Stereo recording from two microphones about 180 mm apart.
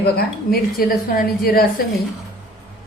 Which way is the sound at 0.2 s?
55° left (ahead or behind).